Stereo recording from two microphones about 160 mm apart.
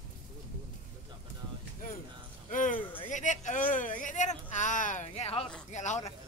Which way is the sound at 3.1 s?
50° left (ahead or behind).